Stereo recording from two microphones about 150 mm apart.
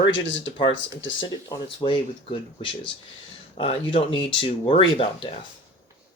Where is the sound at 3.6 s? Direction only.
35° left (ahead or behind).